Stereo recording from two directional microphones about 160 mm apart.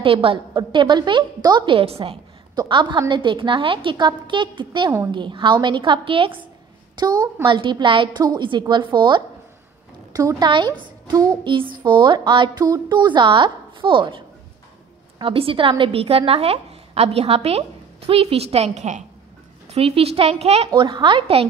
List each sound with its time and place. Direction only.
0.0 s a woman's voice: 35° right (ahead or behind)